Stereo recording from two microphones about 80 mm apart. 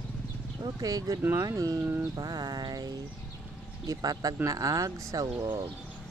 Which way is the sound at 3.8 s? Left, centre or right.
Right.